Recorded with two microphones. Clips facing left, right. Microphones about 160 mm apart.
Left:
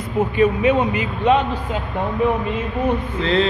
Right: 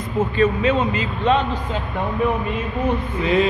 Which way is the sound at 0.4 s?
15° left (ahead or behind).